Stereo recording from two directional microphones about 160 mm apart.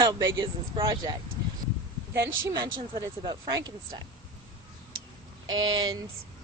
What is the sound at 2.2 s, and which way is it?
Speech, 20° right (ahead or behind).